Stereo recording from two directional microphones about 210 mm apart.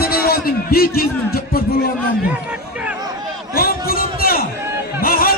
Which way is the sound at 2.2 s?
5° right (ahead or behind).